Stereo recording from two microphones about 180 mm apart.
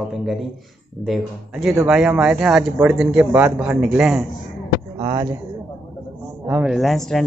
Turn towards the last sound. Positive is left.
turn(degrees=0)  # may be behind; listen again after turning